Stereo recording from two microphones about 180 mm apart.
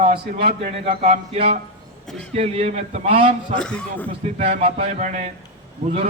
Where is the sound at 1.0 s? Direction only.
35° right (ahead or behind).